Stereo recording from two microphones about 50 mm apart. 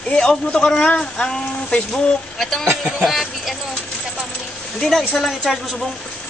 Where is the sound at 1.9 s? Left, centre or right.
Centre.